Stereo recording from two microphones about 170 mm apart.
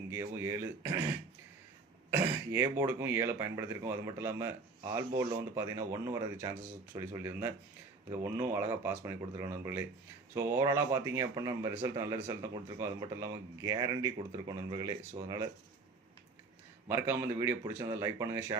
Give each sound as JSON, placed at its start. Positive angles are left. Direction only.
{"t": 0.1, "sound": "speech", "side_deg": -15}
{"t": 2.0, "sound": "speech", "side_deg": -15}
{"t": 16.9, "sound": "speech", "side_deg": -15}